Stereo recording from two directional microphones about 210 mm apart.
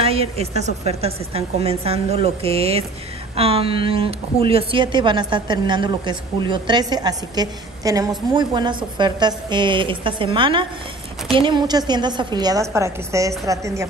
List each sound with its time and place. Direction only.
0.0 s a woman's voice: 30° right (ahead or behind)